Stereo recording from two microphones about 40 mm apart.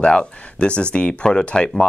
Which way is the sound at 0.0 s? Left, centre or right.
Left.